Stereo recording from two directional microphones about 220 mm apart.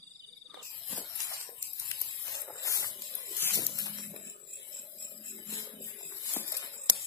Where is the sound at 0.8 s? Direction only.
5° left (ahead or behind).